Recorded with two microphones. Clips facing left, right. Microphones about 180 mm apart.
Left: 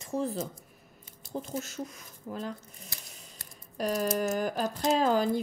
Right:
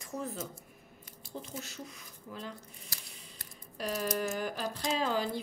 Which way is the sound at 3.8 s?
45° left (ahead or behind).